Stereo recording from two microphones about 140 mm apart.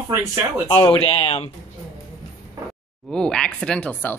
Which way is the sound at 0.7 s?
40° left (ahead or behind).